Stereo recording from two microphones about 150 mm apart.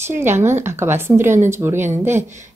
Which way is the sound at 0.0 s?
15° right (ahead or behind).